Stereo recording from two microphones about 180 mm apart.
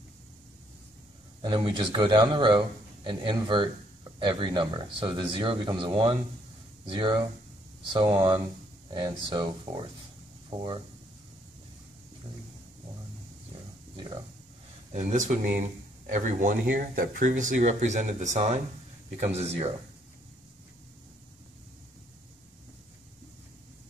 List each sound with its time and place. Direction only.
1.4 s a man's voice: 25° right (ahead or behind)
13.9 s a sound: 25° right (ahead or behind)
14.9 s speech: 40° right (ahead or behind)